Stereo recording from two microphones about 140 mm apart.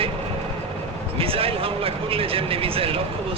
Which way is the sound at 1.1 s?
40° right (ahead or behind).